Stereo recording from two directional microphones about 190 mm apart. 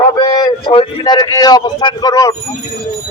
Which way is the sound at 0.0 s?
20° left (ahead or behind).